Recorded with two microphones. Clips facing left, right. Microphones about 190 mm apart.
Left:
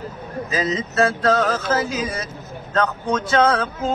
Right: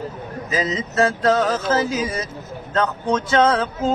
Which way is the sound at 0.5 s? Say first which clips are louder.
Even; 20° right (ahead or behind).